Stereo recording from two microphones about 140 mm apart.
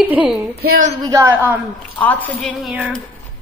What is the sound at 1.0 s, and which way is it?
Speech, 20° right (ahead or behind).